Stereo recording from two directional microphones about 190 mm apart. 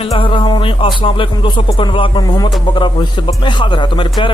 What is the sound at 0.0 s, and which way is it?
Speech, 30° left (ahead or behind).